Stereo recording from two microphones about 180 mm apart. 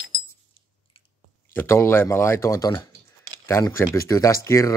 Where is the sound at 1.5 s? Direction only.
15° left (ahead or behind).